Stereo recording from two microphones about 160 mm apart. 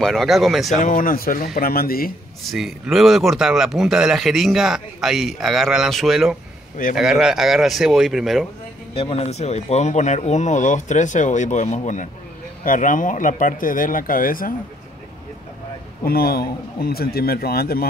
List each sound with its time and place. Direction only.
0.0 s speech: centre (ahead or behind)
0.7 s a man's voice: 55° left (ahead or behind)
2.5 s speech: centre (ahead or behind)
8.9 s speech: 40° left (ahead or behind); by 14.5 s 60° left (ahead or behind)
16.0 s a man's voice: 70° left (ahead or behind)